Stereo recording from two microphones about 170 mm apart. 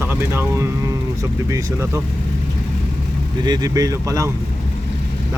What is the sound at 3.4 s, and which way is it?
Speech, 25° right (ahead or behind).